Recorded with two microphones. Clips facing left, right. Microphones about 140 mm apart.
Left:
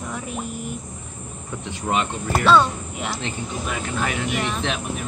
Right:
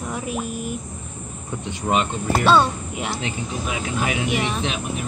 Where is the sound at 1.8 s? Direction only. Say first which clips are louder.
Right 2 dB; 20° right (ahead or behind).